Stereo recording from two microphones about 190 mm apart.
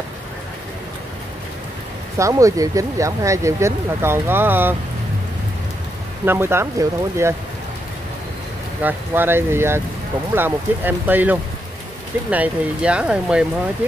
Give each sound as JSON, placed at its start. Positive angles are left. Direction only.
{"t": 2.1, "sound": "speech", "side_deg": -15}
{"t": 6.2, "sound": "speech", "side_deg": -10}
{"t": 8.8, "sound": "speech", "side_deg": -10}